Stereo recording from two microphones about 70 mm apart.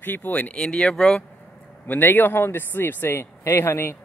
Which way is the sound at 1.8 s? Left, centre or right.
Left.